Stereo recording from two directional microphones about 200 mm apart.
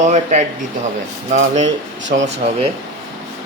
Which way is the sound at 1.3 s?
40° right (ahead or behind).